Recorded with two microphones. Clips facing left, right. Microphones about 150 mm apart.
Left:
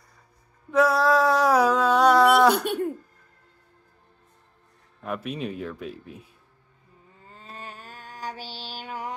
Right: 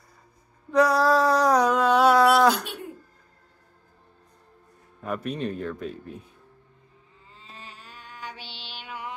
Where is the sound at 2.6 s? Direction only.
55° left (ahead or behind).